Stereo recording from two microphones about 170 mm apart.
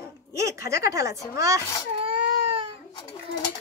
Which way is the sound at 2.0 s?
35° right (ahead or behind).